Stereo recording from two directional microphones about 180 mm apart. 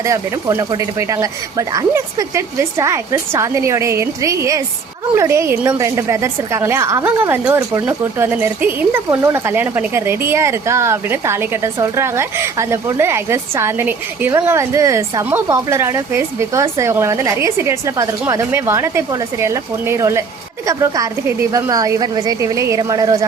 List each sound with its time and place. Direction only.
0.0 s a woman's voice: 15° right (ahead or behind)